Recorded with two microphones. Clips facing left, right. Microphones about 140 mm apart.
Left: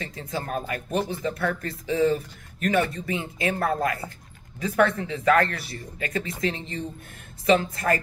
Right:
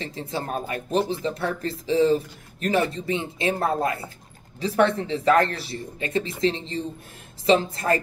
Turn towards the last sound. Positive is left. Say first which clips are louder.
# right 1 dB
turn(degrees=-30)  # may be behind; listen again after turning